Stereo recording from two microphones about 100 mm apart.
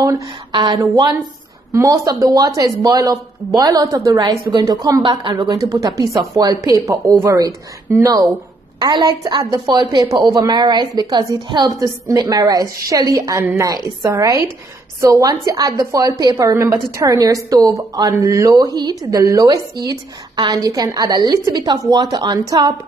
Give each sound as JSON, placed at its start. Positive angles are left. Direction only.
{"t": 0.5, "sound": "speech", "side_deg": -50}
{"t": 0.7, "sound": "a woman's voice", "side_deg": -40}
{"t": 8.7, "sound": "a woman's voice", "side_deg": -45}